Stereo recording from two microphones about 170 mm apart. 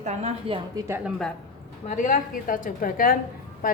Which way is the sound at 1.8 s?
50° left (ahead or behind).